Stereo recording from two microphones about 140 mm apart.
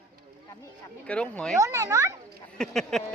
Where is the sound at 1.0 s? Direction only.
10° left (ahead or behind).